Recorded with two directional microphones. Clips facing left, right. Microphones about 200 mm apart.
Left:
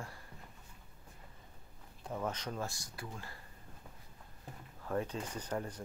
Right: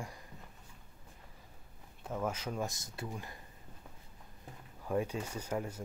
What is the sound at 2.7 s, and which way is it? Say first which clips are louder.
Speech: right 4 dB; 20° right (ahead or behind).